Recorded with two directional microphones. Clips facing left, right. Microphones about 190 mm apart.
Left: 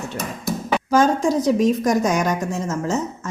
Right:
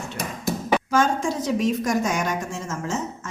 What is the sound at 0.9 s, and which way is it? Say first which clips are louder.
A woman's voice: left 8 dB; 40° left (ahead or behind).